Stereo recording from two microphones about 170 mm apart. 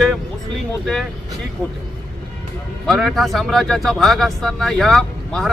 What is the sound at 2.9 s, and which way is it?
Speech, centre (ahead or behind).